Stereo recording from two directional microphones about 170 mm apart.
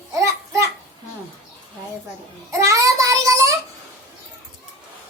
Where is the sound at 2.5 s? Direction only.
20° right (ahead or behind).